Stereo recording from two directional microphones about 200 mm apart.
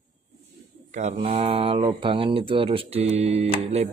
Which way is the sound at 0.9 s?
35° right (ahead or behind).